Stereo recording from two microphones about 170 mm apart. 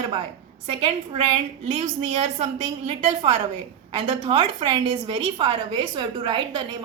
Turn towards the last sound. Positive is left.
turn(degrees=-25)  # may be behind; listen again after turning